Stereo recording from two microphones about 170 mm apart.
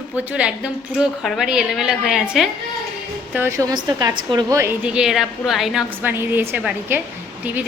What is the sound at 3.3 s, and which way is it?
A woman's voice, 15° right (ahead or behind).